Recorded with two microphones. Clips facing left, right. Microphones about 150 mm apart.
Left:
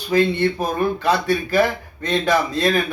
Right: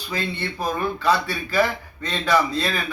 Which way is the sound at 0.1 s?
45° left (ahead or behind).